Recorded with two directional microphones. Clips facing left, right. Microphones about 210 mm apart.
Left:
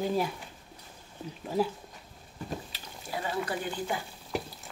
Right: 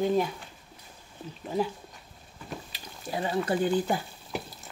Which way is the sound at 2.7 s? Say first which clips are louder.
Right 4 dB; 25° right (ahead or behind).